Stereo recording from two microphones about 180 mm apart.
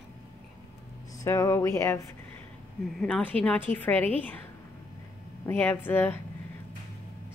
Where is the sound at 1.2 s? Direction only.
15° left (ahead or behind).